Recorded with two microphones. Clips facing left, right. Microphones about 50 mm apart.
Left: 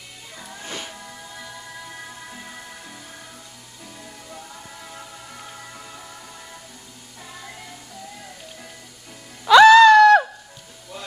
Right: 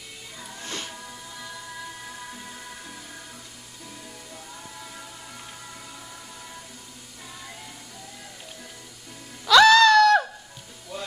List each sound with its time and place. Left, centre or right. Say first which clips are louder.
0.4 s music: left 2 dB; centre
9.5 s music: left 5 dB; left